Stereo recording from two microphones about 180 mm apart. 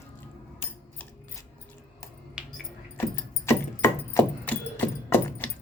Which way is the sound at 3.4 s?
15° left (ahead or behind).